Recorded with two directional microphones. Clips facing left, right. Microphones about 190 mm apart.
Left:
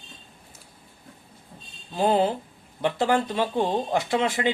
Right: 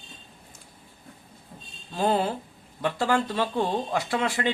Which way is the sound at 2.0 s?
20° left (ahead or behind).